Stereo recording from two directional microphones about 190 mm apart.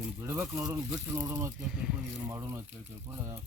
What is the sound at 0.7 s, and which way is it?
Speech, 10° right (ahead or behind).